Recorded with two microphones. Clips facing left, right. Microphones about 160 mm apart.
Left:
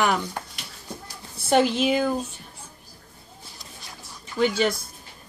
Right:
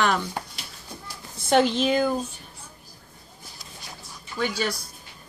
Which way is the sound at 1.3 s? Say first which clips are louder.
Even; 5° left (ahead or behind).